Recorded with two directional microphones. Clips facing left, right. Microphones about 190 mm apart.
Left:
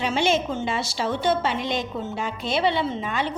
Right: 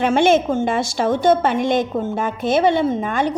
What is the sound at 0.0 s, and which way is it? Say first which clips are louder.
Speech: right 8 dB; 50° right (ahead or behind).